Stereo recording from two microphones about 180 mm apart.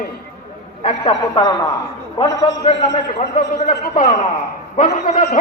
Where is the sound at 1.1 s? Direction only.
25° left (ahead or behind).